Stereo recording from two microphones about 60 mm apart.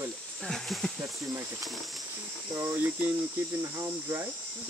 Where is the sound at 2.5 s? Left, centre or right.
Right.